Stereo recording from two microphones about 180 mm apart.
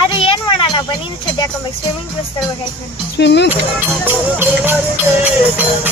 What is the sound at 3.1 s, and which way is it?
Speech, 70° left (ahead or behind).